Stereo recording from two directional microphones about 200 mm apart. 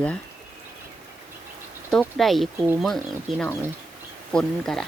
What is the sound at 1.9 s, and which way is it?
Speech, centre (ahead or behind).